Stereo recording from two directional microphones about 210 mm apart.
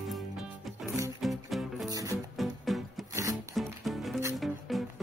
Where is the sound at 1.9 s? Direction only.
15° right (ahead or behind).